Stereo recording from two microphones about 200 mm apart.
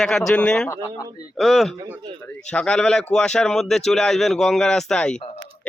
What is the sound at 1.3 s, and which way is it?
A man's voice, centre (ahead or behind).